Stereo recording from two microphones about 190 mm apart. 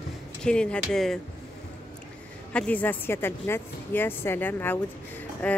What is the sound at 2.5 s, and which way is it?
A woman's voice, 5° left (ahead or behind).